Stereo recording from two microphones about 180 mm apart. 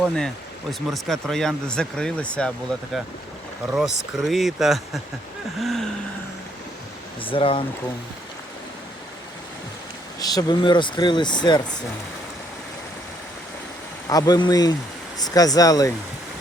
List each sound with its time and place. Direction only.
0.7 s speech: centre (ahead or behind)
7.2 s speech: 30° left (ahead or behind)
10.2 s speech: 20° left (ahead or behind)
14.1 s speech: 20° left (ahead or behind)